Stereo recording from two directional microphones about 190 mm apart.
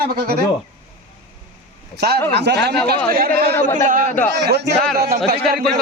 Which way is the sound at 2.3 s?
60° right (ahead or behind).